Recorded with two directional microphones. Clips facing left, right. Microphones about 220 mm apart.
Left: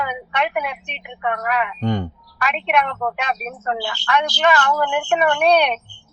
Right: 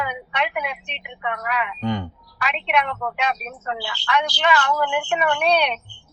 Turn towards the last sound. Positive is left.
turn(degrees=50)  # may be behind; listen again after turning